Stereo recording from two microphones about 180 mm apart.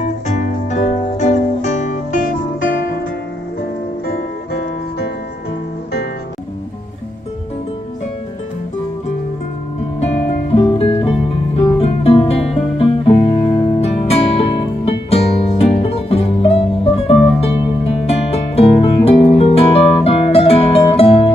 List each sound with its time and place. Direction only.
0.0 s music: 45° left (ahead or behind)
10.5 s music: 30° left (ahead or behind)